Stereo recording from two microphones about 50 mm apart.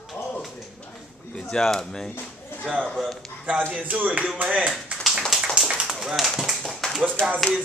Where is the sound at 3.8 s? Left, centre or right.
Right.